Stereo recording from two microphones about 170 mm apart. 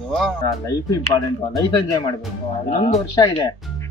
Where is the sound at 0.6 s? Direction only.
20° left (ahead or behind).